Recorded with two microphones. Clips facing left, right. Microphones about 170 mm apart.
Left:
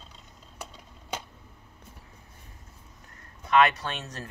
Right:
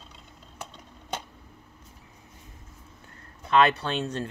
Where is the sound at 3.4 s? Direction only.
30° right (ahead or behind).